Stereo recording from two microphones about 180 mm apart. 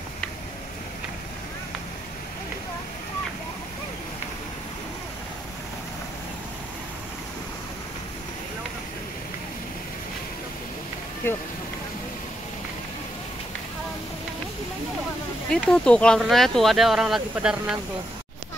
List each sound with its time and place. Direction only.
15.5 s speech: 5° left (ahead or behind)